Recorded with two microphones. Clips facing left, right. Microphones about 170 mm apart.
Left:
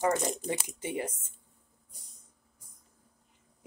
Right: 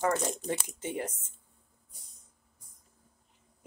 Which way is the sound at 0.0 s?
15° left (ahead or behind).